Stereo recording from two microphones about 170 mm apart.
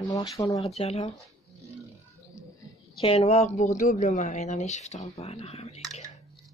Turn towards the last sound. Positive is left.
turn(degrees=35)  # may be behind; listen again after turning